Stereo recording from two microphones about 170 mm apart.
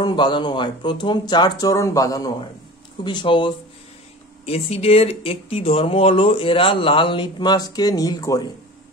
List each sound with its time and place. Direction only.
0.0 s speech: 25° left (ahead or behind)